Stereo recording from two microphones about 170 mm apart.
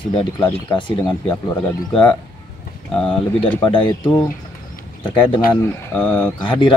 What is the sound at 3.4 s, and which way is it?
Speech, 30° left (ahead or behind).